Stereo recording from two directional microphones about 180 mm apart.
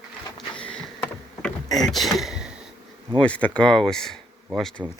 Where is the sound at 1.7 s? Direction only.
Centre (ahead or behind).